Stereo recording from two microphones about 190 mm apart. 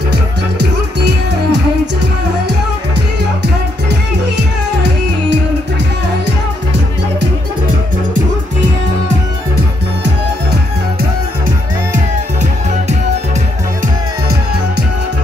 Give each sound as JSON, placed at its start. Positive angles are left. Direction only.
{"t": 0.1, "sound": "music", "side_deg": -60}